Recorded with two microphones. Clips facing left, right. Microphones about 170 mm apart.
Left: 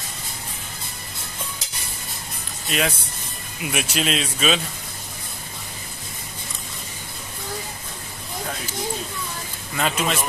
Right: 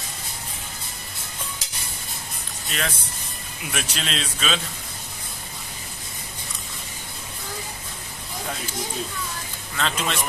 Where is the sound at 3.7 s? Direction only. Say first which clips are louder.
Left 5 dB; 10° left (ahead or behind).